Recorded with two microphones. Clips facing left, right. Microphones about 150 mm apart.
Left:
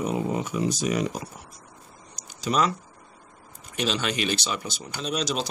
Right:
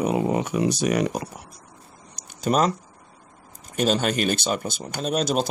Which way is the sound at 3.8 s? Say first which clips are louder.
Right 5 dB; 45° right (ahead or behind).